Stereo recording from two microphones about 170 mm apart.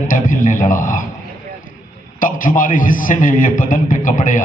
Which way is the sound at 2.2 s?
50° left (ahead or behind).